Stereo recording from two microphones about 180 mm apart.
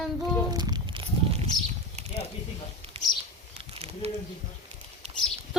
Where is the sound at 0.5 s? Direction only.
25° right (ahead or behind).